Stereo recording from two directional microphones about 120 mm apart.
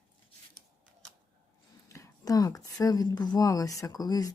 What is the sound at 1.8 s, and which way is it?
Speech, 25° left (ahead or behind).